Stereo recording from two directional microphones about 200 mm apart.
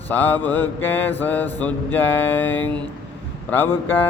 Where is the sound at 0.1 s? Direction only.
10° left (ahead or behind).